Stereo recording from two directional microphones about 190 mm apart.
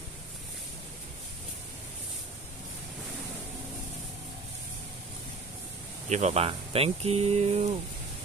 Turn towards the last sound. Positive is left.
turn(degrees=-35)  # may be behind; listen again after turning